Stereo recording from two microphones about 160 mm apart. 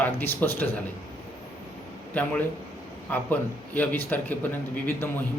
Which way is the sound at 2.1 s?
10° left (ahead or behind).